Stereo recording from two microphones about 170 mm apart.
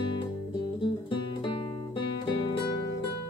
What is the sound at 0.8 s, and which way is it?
Music, 30° left (ahead or behind).